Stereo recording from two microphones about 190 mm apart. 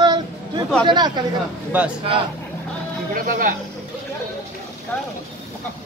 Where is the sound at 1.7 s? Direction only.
5° right (ahead or behind).